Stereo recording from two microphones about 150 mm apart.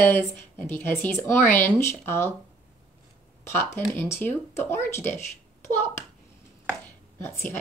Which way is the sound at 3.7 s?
15° left (ahead or behind).